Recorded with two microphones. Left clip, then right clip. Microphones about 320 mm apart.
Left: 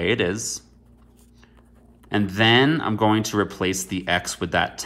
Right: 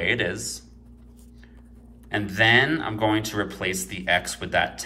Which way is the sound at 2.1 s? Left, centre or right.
Centre.